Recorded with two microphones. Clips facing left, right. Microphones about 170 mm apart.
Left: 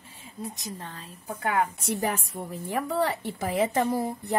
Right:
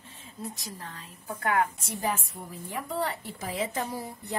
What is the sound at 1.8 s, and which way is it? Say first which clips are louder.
A woman's voice: left 3 dB; 75° left (ahead or behind).